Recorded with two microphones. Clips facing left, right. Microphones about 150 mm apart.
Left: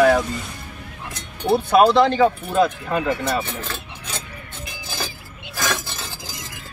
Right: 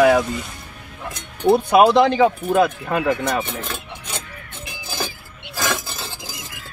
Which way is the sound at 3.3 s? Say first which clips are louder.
Right 1 dB; 15° right (ahead or behind).